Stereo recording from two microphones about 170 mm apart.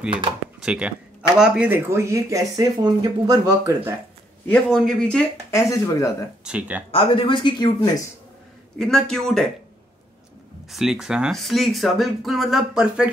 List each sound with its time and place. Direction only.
0.6 s speech: 5° right (ahead or behind); by 3.9 s 20° right (ahead or behind)
4.5 s speech: 5° left (ahead or behind)
5.5 s speech: 20° left (ahead or behind)
6.4 s speech: 5° right (ahead or behind)
6.9 s speech: 30° left (ahead or behind)
8.7 s speech: 5° left (ahead or behind)
10.7 s speech: 5° right (ahead or behind)